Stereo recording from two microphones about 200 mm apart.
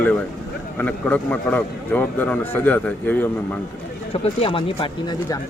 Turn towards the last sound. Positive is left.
turn(degrees=25)  # may be behind; listen again after turning